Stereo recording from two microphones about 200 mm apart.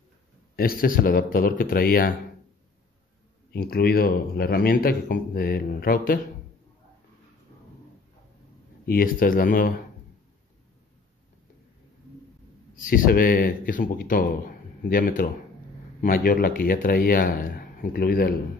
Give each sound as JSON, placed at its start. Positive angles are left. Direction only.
{"t": 0.6, "sound": "speech", "side_deg": 45}
{"t": 3.5, "sound": "speech", "side_deg": 50}
{"t": 8.8, "sound": "speech", "side_deg": 45}
{"t": 12.7, "sound": "speech", "side_deg": 45}